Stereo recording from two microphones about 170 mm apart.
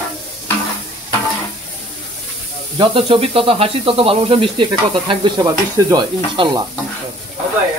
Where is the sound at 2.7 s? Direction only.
30° right (ahead or behind).